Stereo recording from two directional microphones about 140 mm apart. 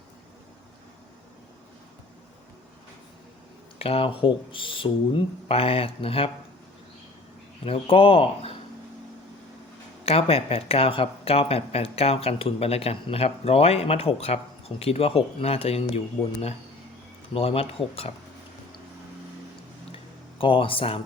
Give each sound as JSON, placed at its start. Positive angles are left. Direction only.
{"t": 3.8, "sound": "speech", "side_deg": 40}
{"t": 7.6, "sound": "speech", "side_deg": 45}
{"t": 10.1, "sound": "speech", "side_deg": 45}
{"t": 17.3, "sound": "speech", "side_deg": 45}
{"t": 20.4, "sound": "speech", "side_deg": 40}